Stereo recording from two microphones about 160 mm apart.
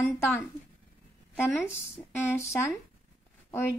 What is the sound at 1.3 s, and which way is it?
A woman's voice, 15° left (ahead or behind).